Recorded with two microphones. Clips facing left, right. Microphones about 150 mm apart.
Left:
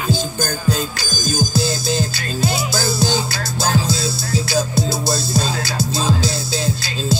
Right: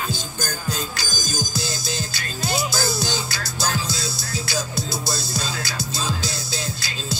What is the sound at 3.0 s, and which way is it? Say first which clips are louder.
Music: left 7 dB; 30° left (ahead or behind).